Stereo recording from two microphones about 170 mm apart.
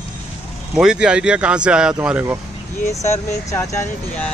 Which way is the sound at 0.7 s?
5° right (ahead or behind).